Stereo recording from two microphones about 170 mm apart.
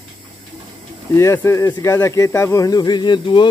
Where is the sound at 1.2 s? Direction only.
15° left (ahead or behind).